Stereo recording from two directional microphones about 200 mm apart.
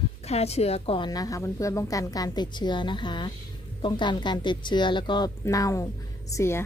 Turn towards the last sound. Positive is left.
turn(degrees=15)  # may be behind; listen again after turning